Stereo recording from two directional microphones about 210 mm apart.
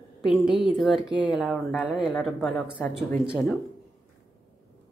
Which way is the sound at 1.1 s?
20° left (ahead or behind).